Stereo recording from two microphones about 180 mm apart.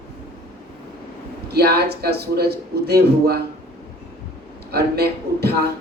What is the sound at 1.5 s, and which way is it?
A man's voice, 60° right (ahead or behind).